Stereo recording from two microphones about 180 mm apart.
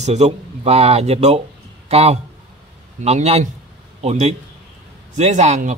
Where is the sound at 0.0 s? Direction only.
40° right (ahead or behind).